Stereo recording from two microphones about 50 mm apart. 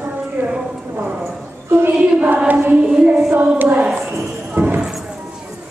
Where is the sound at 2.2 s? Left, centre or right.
Right.